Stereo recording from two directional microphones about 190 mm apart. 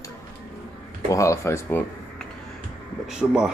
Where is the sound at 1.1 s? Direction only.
15° left (ahead or behind).